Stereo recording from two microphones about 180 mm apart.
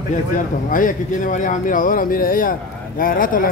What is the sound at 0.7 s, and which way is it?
Speech, 50° left (ahead or behind).